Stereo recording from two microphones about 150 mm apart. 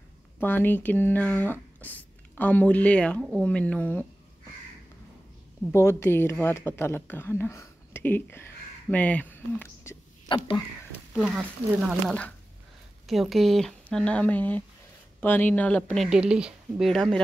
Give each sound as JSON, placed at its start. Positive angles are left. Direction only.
{"t": 0.4, "sound": "speech", "side_deg": 15}
{"t": 5.7, "sound": "speech", "side_deg": 15}
{"t": 10.2, "sound": "speech", "side_deg": 30}
{"t": 11.2, "sound": "speech", "side_deg": -5}
{"t": 13.0, "sound": "speech", "side_deg": 0}